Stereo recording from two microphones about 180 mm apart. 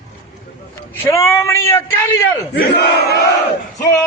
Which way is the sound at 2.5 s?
70° left (ahead or behind).